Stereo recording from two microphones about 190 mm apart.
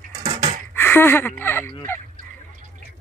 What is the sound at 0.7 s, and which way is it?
Speech, 10° left (ahead or behind).